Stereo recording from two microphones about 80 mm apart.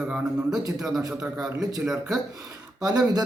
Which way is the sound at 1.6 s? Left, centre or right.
Right.